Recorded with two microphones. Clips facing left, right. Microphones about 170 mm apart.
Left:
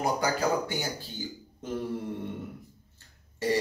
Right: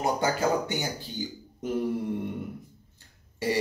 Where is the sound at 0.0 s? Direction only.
20° right (ahead or behind).